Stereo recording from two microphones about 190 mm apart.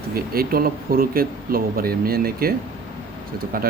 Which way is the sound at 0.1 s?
50° right (ahead or behind).